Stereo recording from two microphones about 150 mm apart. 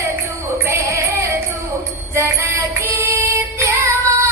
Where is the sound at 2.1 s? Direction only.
20° right (ahead or behind).